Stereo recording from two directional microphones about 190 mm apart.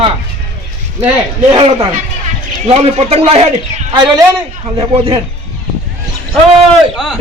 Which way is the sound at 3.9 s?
20° right (ahead or behind).